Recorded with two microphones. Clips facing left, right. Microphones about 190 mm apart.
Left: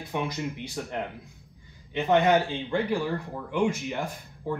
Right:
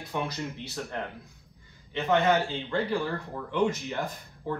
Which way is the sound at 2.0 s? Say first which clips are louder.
Left 2 dB; 15° left (ahead or behind).